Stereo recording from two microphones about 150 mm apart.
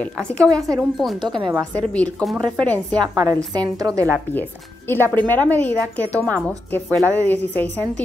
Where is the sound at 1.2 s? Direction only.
30° right (ahead or behind).